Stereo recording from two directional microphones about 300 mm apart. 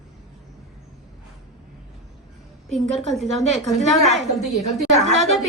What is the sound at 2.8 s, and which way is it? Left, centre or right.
Speech, right.